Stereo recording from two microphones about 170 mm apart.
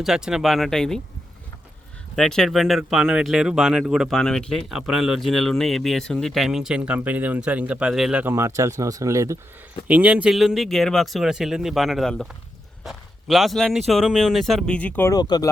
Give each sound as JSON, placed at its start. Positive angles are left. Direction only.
{"t": 0.0, "sound": "speech", "side_deg": -5}
{"t": 2.1, "sound": "speech", "side_deg": 5}